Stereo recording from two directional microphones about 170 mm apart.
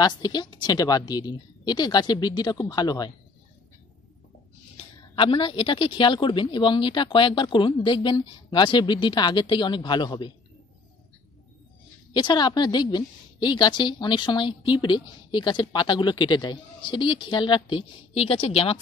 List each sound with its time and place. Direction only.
0.0 s a woman's voice: 25° left (ahead or behind)
4.7 s a woman's voice: 30° left (ahead or behind)
12.1 s a woman's voice: 25° left (ahead or behind)